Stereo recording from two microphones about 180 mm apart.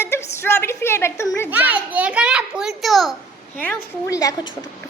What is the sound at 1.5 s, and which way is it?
A child's voice, 10° right (ahead or behind).